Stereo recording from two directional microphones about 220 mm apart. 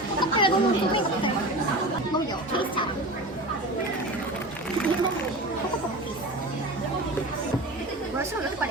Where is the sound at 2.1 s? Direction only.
20° left (ahead or behind).